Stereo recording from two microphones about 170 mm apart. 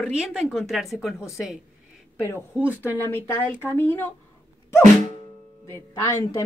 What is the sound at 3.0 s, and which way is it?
Speech, 15° left (ahead or behind).